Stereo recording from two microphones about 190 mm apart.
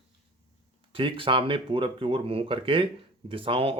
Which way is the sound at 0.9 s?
25° right (ahead or behind).